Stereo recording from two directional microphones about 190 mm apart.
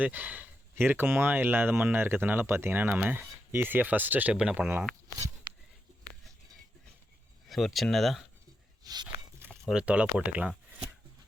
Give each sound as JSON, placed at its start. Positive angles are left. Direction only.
{"t": 0.0, "sound": "speech", "side_deg": -10}
{"t": 7.4, "sound": "speech", "side_deg": 0}
{"t": 8.8, "sound": "a sound", "side_deg": -20}
{"t": 9.5, "sound": "speech", "side_deg": -5}